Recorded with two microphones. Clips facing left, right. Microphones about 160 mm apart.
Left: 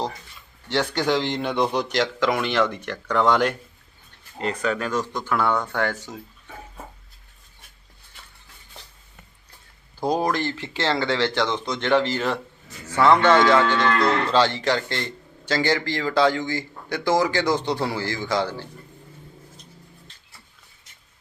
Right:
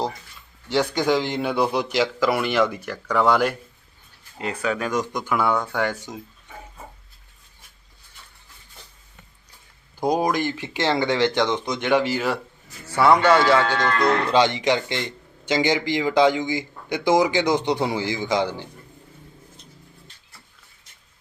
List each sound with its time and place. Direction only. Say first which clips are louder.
0.7 s a man's voice: right 2 dB; 10° right (ahead or behind)
10.0 s a man's voice: right 1 dB; 15° right (ahead or behind)